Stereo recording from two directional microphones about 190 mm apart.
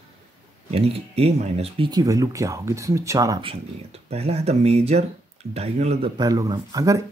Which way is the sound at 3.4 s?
30° right (ahead or behind).